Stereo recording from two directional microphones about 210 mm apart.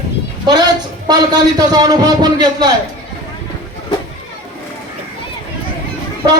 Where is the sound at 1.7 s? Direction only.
20° right (ahead or behind).